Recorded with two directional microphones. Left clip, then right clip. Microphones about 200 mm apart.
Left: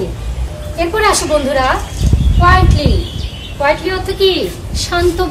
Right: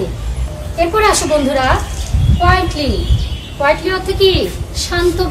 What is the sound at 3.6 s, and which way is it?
A woman's voice, 15° left (ahead or behind).